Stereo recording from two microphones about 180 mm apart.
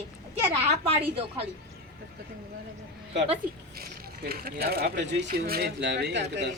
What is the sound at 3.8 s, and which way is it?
Speech, 55° right (ahead or behind).